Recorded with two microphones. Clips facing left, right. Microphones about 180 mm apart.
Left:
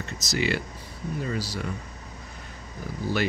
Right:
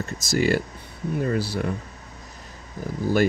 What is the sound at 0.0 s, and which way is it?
Speech, 50° right (ahead or behind).